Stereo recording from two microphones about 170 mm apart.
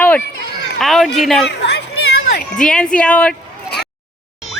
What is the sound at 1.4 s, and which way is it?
Speech, 90° left.